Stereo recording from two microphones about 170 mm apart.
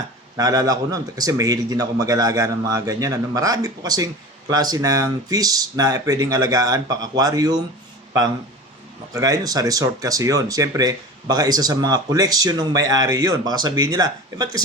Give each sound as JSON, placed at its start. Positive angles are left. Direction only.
{"t": 0.3, "sound": "speech", "side_deg": -20}
{"t": 9.1, "sound": "speech", "side_deg": -20}